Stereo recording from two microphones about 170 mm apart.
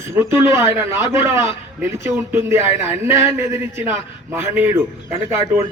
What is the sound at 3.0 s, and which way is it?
Speech, 15° right (ahead or behind).